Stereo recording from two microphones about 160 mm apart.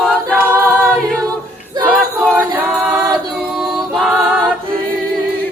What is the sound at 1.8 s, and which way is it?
Choir, 5° right (ahead or behind).